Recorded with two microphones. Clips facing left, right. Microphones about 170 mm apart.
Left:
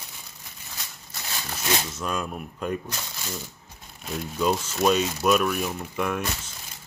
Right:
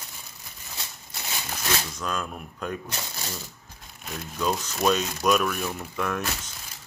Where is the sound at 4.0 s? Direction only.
5° left (ahead or behind).